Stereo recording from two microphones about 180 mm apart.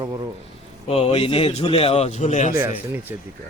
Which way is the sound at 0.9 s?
35° left (ahead or behind).